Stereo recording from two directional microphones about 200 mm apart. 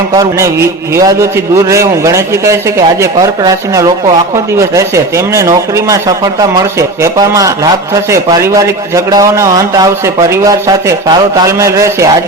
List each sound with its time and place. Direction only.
0.1 s a man's voice: 15° right (ahead or behind)